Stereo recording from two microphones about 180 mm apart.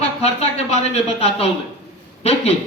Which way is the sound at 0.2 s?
35° left (ahead or behind).